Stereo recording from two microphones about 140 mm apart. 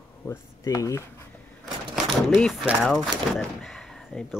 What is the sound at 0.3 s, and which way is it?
Speech, 25° left (ahead or behind).